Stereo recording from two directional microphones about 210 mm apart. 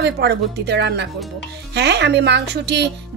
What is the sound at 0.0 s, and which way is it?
A woman's voice, 50° right (ahead or behind).